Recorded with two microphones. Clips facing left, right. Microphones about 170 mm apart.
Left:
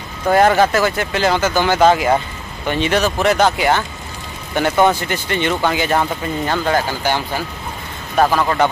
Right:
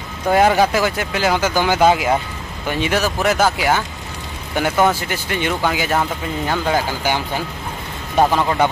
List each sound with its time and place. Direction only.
0.3 s speech: 10° right (ahead or behind)